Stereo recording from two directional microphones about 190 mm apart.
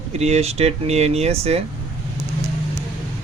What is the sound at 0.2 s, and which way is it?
Speech, 35° right (ahead or behind).